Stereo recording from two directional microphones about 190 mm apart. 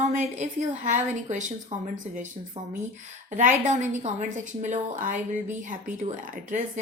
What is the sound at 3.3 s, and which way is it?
A woman's voice, 40° right (ahead or behind).